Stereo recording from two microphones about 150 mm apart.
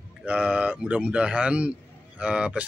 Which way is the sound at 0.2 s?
5° right (ahead or behind).